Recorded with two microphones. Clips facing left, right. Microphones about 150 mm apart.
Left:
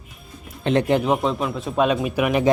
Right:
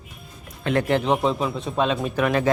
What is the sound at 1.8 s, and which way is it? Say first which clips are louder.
Speech: left 2 dB; 10° left (ahead or behind).